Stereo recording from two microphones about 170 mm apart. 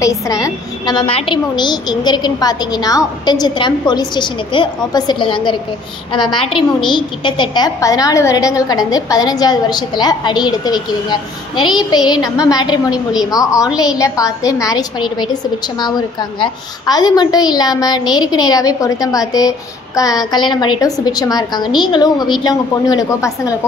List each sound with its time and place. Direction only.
0.0 s a woman's voice: 20° left (ahead or behind)